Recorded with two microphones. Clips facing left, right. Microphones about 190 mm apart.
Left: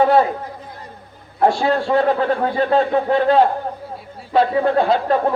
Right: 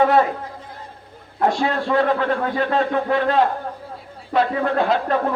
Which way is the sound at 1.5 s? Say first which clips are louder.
Left 3 dB; 30° left (ahead or behind).